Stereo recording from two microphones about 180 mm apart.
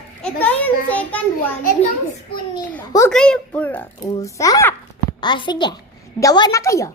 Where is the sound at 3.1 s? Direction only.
5° left (ahead or behind).